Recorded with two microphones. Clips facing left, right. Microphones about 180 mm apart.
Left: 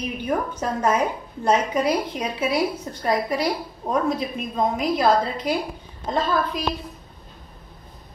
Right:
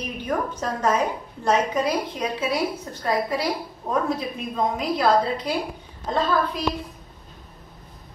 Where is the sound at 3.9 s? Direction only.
15° left (ahead or behind).